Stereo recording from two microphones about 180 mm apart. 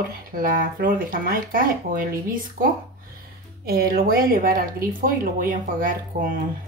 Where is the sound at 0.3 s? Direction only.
50° right (ahead or behind).